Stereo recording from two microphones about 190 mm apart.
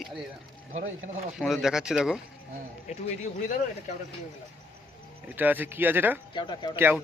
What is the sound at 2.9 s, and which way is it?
Speech, 35° left (ahead or behind).